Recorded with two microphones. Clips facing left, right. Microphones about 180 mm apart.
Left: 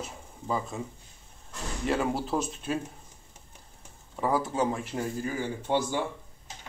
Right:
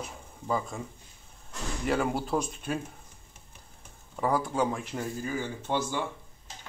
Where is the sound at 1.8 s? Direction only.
Centre (ahead or behind).